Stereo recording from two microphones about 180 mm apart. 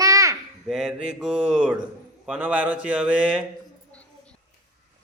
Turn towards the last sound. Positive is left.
turn(degrees=5)  # may be behind; listen again after turning